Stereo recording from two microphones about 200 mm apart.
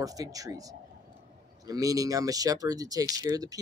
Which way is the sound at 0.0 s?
15° right (ahead or behind).